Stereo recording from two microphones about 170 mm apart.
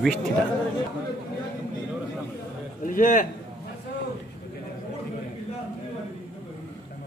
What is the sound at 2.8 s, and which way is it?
Speech, 50° left (ahead or behind).